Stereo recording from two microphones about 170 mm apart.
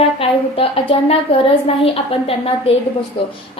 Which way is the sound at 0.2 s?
35° left (ahead or behind).